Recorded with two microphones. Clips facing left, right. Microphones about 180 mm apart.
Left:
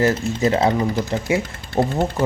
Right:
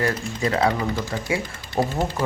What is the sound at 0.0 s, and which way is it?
Speech, 25° left (ahead or behind).